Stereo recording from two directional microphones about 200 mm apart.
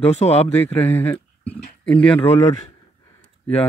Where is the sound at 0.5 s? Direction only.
10° left (ahead or behind).